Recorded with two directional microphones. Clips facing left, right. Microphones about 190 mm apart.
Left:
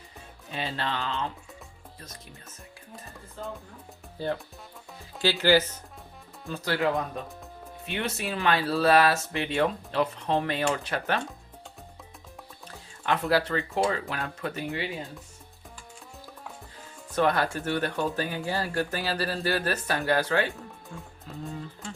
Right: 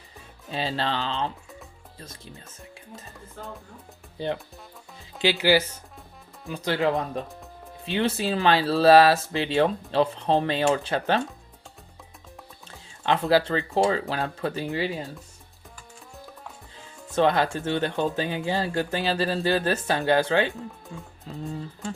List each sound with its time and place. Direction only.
0.5 s speech: 30° right (ahead or behind)
4.2 s speech: 20° right (ahead or behind)
6.5 s speech: 20° right (ahead or behind)
13.1 s speech: 25° right (ahead or behind)
17.1 s speech: 25° right (ahead or behind)
20.5 s speech: centre (ahead or behind)
21.5 s speech: 40° right (ahead or behind)